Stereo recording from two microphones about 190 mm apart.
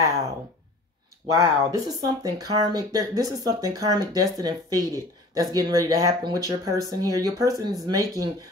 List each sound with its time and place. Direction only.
1.3 s speech: 20° right (ahead or behind)